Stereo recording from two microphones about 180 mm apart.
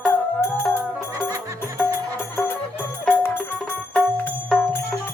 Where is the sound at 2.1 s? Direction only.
10° left (ahead or behind).